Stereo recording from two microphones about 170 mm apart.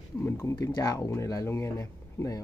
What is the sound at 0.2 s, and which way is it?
Speech, 15° left (ahead or behind).